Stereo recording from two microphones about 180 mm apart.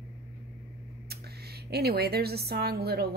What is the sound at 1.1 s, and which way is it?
Speech, 60° right (ahead or behind).